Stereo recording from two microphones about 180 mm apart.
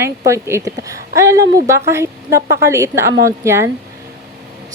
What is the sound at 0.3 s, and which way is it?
A woman's voice, 15° right (ahead or behind).